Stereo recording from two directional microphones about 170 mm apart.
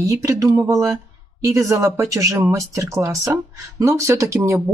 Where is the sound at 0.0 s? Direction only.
20° right (ahead or behind).